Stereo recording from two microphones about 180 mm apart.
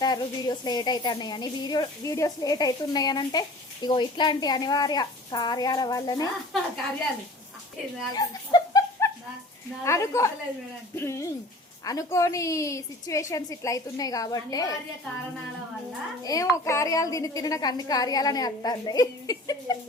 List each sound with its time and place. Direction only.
0.0 s a woman's voice: 20° left (ahead or behind)
8.1 s a sound: 20° left (ahead or behind)
9.8 s a woman's voice: 15° left (ahead or behind)
16.2 s a woman's voice: 20° left (ahead or behind)